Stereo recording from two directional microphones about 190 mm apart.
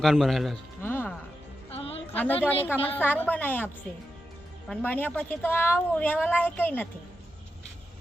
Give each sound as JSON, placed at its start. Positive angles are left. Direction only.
{"t": 0.0, "sound": "speech", "side_deg": 0}
{"t": 0.8, "sound": "music", "side_deg": 10}
{"t": 1.7, "sound": "music", "side_deg": 30}
{"t": 2.1, "sound": "a woman's voice", "side_deg": 10}
{"t": 4.7, "sound": "a woman's voice", "side_deg": 10}